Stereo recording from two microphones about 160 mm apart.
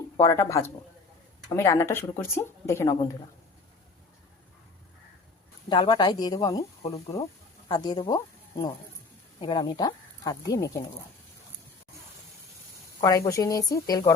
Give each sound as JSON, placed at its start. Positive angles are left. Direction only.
{"t": 0.2, "sound": "speech", "side_deg": 20}
{"t": 5.6, "sound": "speech", "side_deg": 30}
{"t": 7.7, "sound": "speech", "side_deg": 30}
{"t": 13.0, "sound": "speech", "side_deg": 20}